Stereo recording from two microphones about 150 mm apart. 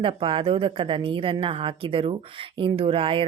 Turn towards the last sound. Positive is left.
turn(degrees=-35)  # may be behind; listen again after turning